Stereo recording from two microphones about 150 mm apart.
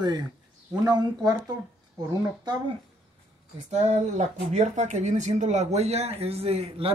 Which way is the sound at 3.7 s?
50° right (ahead or behind).